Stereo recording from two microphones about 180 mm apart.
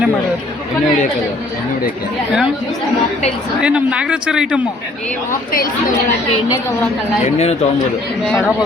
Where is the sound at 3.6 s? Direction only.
5° right (ahead or behind).